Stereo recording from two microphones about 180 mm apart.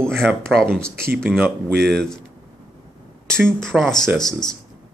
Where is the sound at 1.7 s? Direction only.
65° right (ahead or behind).